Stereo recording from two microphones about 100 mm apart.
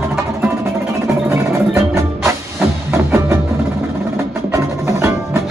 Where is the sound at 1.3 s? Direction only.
30° right (ahead or behind).